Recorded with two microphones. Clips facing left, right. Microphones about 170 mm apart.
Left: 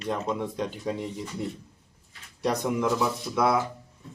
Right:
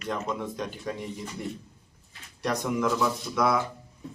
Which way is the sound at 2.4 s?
10° left (ahead or behind).